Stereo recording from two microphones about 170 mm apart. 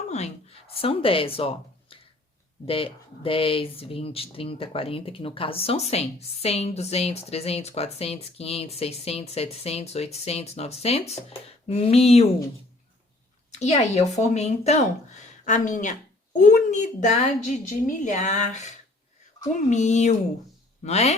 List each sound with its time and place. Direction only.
0.1 s a sound: 35° left (ahead or behind)
2.6 s speech: 30° left (ahead or behind)
13.5 s a woman's voice: 40° left (ahead or behind)